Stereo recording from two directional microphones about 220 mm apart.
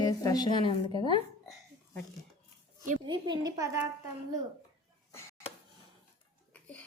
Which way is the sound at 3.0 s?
20° right (ahead or behind).